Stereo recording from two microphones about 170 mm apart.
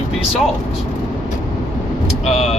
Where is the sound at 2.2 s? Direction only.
35° left (ahead or behind).